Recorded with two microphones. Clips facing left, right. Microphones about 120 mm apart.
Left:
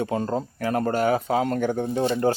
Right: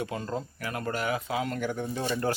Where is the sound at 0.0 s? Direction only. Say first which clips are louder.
Left 7 dB; 30° left (ahead or behind).